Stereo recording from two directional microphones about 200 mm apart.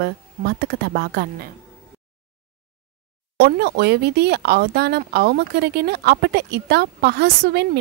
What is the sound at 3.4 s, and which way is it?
Speech, 55° right (ahead or behind).